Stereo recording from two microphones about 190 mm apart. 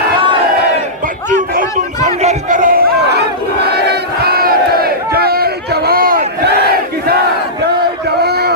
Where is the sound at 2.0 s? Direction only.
40° right (ahead or behind).